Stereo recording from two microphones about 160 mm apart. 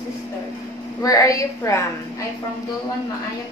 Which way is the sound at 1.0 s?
20° left (ahead or behind).